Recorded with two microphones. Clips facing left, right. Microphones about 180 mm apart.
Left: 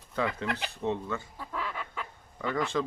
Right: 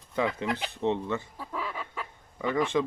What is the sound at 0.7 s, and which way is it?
Speech, 20° right (ahead or behind).